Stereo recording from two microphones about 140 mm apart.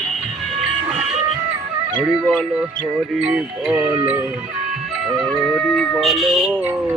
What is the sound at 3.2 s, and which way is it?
Music, 5° right (ahead or behind).